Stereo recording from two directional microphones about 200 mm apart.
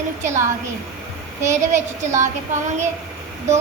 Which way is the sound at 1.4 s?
15° right (ahead or behind).